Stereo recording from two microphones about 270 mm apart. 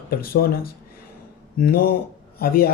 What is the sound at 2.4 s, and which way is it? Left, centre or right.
Speech, left.